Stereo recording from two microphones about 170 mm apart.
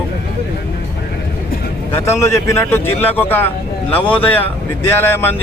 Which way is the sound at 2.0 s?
15° left (ahead or behind).